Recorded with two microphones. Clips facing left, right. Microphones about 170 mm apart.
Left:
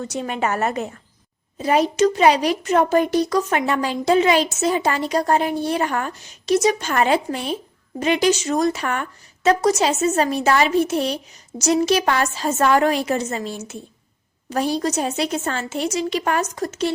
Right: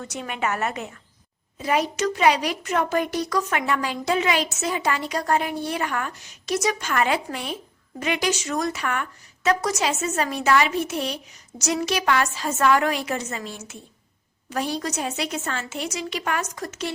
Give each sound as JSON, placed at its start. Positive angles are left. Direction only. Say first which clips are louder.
{"t": 0.0, "sound": "speech", "louder": "left 5 dB", "side_deg": 30}